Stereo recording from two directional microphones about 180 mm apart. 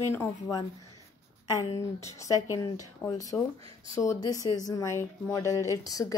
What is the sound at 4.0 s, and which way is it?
Speech, 20° left (ahead or behind).